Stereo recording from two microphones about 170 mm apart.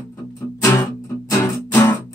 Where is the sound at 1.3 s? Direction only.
15° left (ahead or behind).